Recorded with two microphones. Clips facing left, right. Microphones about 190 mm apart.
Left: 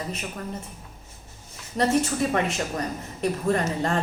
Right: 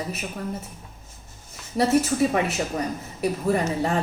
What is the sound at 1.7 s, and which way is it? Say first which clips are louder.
A woman's voice: right 2 dB; 10° right (ahead or behind).